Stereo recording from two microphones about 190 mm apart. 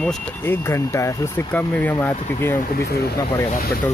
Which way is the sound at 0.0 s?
15° left (ahead or behind).